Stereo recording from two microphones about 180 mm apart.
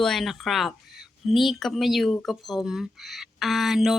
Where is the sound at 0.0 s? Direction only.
Centre (ahead or behind).